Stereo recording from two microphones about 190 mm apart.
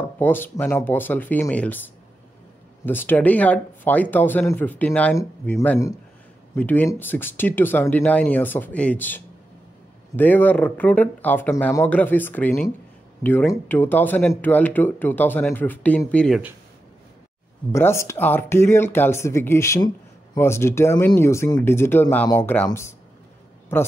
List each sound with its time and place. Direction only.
0.2 s speech: 10° left (ahead or behind)
2.8 s speech: 10° left (ahead or behind)
17.7 s speech: 15° left (ahead or behind)